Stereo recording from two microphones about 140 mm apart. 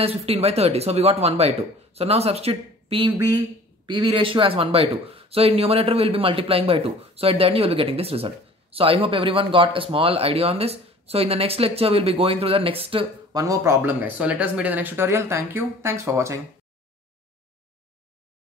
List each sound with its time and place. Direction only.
0.0 s speech: 45° right (ahead or behind)
3.2 s speech: 30° right (ahead or behind)
13.3 s speech: 25° right (ahead or behind)